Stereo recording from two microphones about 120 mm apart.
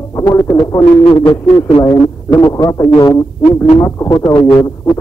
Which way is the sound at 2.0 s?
30° left (ahead or behind).